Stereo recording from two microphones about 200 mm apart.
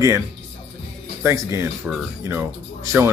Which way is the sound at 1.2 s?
15° right (ahead or behind).